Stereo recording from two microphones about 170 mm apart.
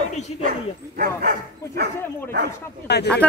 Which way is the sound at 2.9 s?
75° left (ahead or behind).